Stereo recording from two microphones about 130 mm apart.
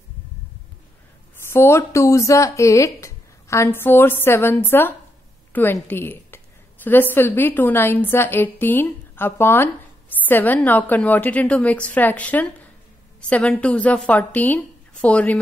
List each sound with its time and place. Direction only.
1.5 s a woman's voice: 20° left (ahead or behind)